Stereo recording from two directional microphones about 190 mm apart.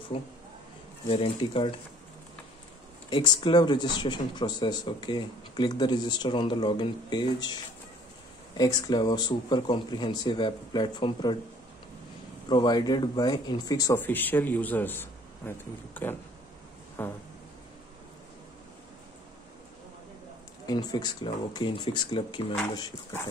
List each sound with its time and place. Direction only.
0.1 s speech: 30° left (ahead or behind)
3.1 s speech: 25° left (ahead or behind)
8.5 s speech: 20° left (ahead or behind)
12.4 s speech: 20° left (ahead or behind)
17.0 s a sound: 10° left (ahead or behind)
20.6 s speech: 20° left (ahead or behind)